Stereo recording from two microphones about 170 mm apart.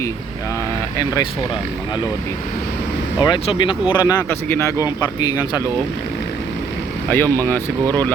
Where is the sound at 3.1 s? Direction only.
25° left (ahead or behind).